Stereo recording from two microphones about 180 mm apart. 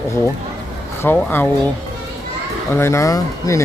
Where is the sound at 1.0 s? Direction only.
10° left (ahead or behind).